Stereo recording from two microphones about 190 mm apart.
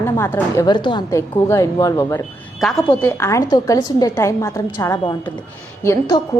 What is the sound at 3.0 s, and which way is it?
A woman's voice, 15° left (ahead or behind).